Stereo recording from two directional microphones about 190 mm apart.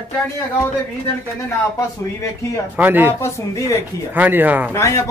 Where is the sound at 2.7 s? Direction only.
10° right (ahead or behind).